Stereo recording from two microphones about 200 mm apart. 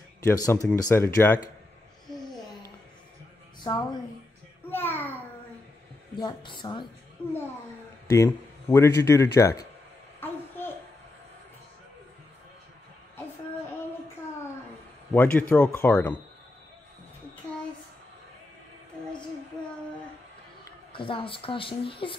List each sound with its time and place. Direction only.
0.2 s a man's voice: 15° left (ahead or behind)
3.6 s a woman's voice: 20° left (ahead or behind)
4.6 s a sound: 10° left (ahead or behind)
6.1 s a woman's voice: 20° left (ahead or behind)
8.1 s a man's voice: 15° left (ahead or behind)
10.2 s a sound: 10° left (ahead or behind)
15.1 s a man's voice: 5° left (ahead or behind)
20.9 s speech: 25° left (ahead or behind)